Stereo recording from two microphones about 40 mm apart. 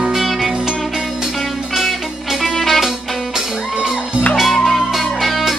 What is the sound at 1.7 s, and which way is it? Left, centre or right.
Music, centre.